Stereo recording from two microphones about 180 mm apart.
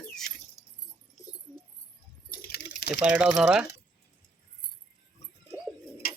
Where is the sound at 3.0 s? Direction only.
5° right (ahead or behind).